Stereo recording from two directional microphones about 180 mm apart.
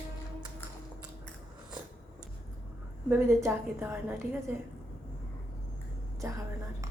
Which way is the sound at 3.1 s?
10° right (ahead or behind).